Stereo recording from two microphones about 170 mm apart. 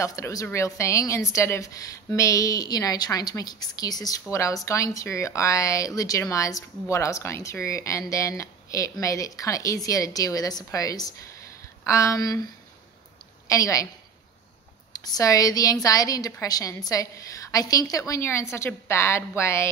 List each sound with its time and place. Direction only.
0.0 s a woman's voice: 20° left (ahead or behind)
13.5 s a woman's voice: 20° left (ahead or behind)
14.9 s a woman's voice: 20° left (ahead or behind)